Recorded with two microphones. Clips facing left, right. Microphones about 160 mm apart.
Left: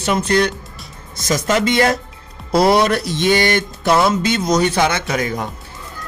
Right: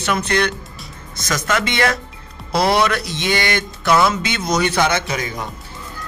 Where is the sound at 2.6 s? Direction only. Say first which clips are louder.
Left 3 dB; 45° left (ahead or behind).